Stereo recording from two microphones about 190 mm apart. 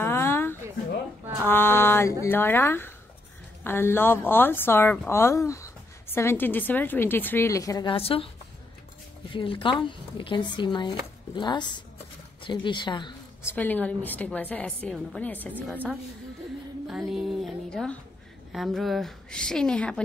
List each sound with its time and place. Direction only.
0.0 s a sound: 15° left (ahead or behind)
2.2 s a woman's voice: 10° left (ahead or behind); by 8.3 s 30° left (ahead or behind)
9.3 s speech: 25° left (ahead or behind)
13.5 s a woman's voice: 10° left (ahead or behind)
16.8 s a woman's voice: centre (ahead or behind)